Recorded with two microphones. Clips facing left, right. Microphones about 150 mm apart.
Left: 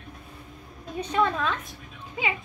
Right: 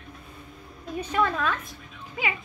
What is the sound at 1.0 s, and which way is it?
Speech, 20° left (ahead or behind).